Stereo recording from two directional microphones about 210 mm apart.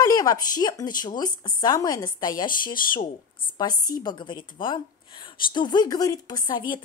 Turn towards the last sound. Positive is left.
turn(degrees=20)  # may be behind; listen again after turning